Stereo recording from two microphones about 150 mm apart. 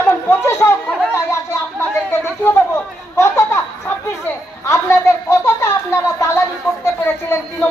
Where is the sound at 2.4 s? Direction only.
15° left (ahead or behind).